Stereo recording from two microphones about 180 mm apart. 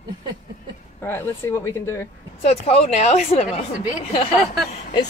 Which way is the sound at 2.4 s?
35° left (ahead or behind).